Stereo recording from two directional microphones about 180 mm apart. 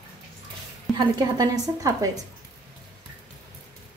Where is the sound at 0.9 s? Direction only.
20° right (ahead or behind).